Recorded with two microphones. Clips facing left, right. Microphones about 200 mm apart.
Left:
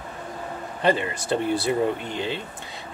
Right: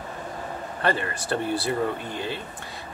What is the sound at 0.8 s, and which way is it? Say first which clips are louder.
Speech: left 4 dB; 20° left (ahead or behind).